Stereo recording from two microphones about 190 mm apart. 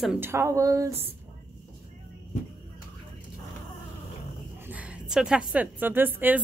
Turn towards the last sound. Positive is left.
turn(degrees=-10)  # may be behind; listen again after turning